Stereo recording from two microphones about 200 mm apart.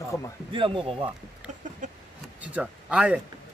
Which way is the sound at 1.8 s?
40° right (ahead or behind).